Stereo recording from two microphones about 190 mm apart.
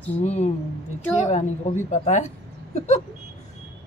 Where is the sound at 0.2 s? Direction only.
35° left (ahead or behind).